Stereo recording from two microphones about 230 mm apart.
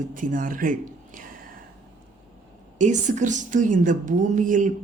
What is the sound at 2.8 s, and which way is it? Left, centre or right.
Speech, right.